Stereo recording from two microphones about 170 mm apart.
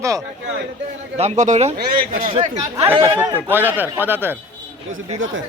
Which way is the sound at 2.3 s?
40° right (ahead or behind).